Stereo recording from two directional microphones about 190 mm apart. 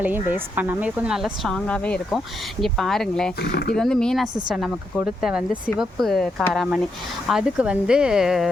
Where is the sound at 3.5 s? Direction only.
55° left (ahead or behind).